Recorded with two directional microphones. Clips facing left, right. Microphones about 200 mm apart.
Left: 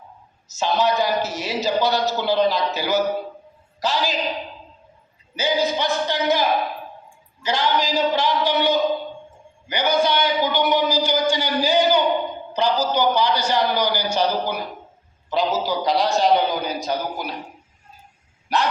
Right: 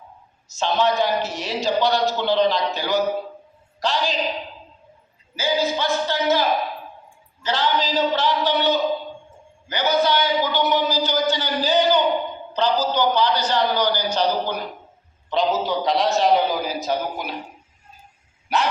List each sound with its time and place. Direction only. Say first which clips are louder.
0.4 s a man's voice: even; 5° left (ahead or behind)
5.4 s a man's voice: left 1 dB; 20° left (ahead or behind)
7.4 s a man's voice: left 1 dB; 10° left (ahead or behind)
9.6 s a sound: even; 15° left (ahead or behind)
15.3 s a man's voice: right 1 dB; centre (ahead or behind)
18.4 s dog: even; centre (ahead or behind)